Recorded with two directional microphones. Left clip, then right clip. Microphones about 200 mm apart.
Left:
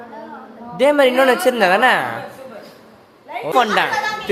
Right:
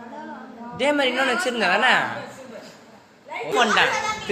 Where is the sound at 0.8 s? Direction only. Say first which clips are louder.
Left 8 dB; 40° left (ahead or behind).